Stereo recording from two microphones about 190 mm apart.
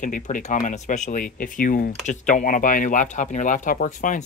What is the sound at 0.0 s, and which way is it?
Speech, 45° left (ahead or behind).